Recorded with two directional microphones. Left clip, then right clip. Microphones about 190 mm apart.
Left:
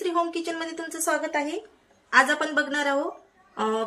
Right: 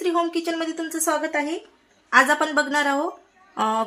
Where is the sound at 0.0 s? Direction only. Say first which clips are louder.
Right 3 dB; 55° right (ahead or behind).